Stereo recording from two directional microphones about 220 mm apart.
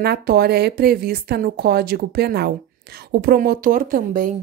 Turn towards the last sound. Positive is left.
turn(degrees=-40)  # may be behind; listen again after turning